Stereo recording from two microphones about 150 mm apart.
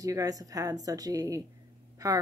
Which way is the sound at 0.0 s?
20° right (ahead or behind).